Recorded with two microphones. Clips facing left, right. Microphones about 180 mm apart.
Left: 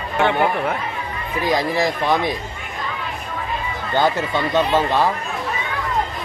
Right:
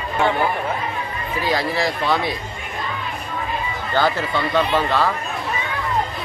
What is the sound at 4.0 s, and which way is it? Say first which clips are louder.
Speech: left 1 dB; 20° left (ahead or behind).